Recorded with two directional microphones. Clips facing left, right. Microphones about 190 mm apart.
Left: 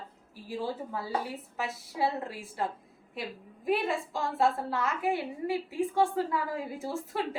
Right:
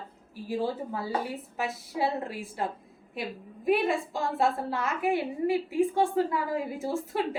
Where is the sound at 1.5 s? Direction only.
20° right (ahead or behind).